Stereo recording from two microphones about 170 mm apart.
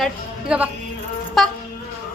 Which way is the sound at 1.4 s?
Centre (ahead or behind).